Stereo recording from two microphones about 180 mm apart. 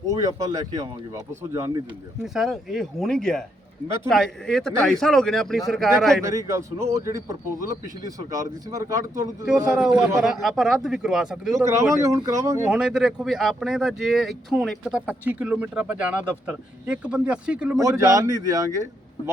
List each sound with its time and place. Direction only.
0.1 s speech: 20° right (ahead or behind)
2.2 s speech: centre (ahead or behind)
6.2 s a man's voice: 15° right (ahead or behind)
9.5 s speech: 5° right (ahead or behind)
11.5 s a man's voice: 15° right (ahead or behind)
12.7 s speech: 5° right (ahead or behind)
17.7 s speech: 20° right (ahead or behind)